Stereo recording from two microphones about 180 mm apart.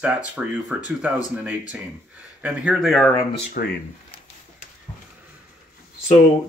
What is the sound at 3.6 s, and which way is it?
Speech, 55° left (ahead or behind).